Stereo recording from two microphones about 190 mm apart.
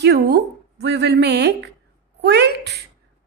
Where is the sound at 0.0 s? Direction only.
60° right (ahead or behind).